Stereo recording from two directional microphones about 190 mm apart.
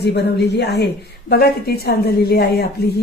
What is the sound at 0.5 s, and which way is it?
A woman's voice, 60° left (ahead or behind).